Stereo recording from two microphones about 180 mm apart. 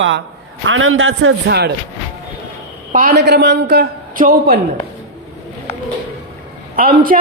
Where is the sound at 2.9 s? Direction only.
55° right (ahead or behind).